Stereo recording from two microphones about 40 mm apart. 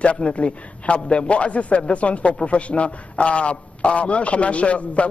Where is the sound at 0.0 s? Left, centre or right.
Left.